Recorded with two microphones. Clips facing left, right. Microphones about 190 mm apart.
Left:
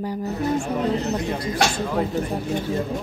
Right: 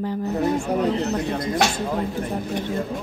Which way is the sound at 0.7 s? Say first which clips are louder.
Right 2 dB; 70° right (ahead or behind).